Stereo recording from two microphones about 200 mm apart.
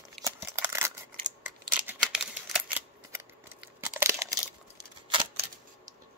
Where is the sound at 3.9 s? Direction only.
15° right (ahead or behind).